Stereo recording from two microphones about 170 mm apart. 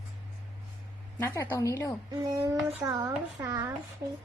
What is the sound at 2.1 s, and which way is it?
A child's voice, 20° right (ahead or behind).